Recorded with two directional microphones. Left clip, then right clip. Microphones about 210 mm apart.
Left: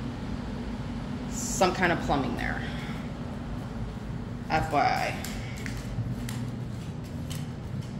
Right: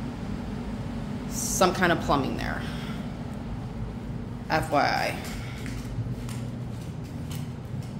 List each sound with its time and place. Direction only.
1.3 s a woman's voice: 20° right (ahead or behind)
4.5 s a man's voice: 25° right (ahead or behind)